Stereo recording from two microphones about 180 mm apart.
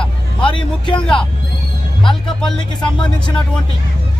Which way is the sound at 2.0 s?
25° left (ahead or behind).